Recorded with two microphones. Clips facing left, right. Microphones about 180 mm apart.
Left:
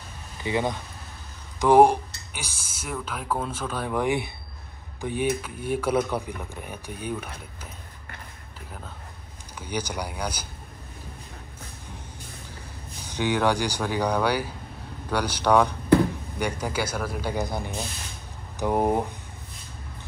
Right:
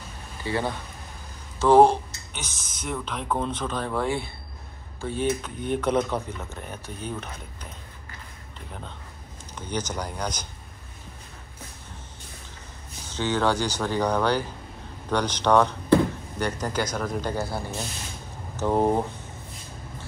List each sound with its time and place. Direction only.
0.4 s speech: 15° left (ahead or behind)
9.6 s speech: 10° left (ahead or behind)
13.0 s speech: 15° left (ahead or behind)